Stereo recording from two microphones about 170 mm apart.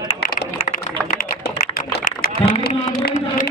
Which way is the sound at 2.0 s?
60° left (ahead or behind).